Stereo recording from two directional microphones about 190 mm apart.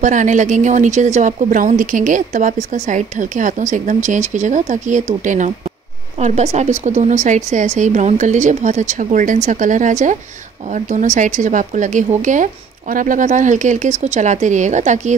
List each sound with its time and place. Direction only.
0.0 s speech: 40° right (ahead or behind)